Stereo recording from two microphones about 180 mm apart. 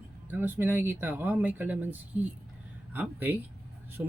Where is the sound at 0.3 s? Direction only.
10° right (ahead or behind).